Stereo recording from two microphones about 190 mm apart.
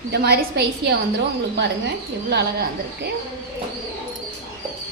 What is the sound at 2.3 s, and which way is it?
Speech, 55° right (ahead or behind).